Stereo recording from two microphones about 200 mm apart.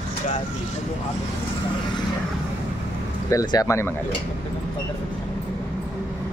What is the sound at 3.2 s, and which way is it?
Speech, 15° left (ahead or behind).